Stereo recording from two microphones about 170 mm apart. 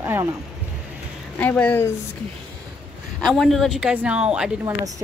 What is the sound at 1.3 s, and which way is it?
Speech, 10° left (ahead or behind).